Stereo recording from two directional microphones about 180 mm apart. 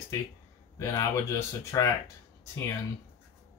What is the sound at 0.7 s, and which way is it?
Speech, 15° left (ahead or behind).